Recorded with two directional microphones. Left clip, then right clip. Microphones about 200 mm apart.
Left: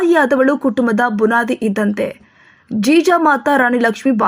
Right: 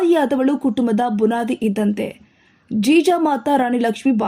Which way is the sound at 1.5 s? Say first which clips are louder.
Left 3 dB; 40° left (ahead or behind).